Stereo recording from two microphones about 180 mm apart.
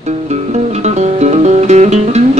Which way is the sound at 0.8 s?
40° right (ahead or behind).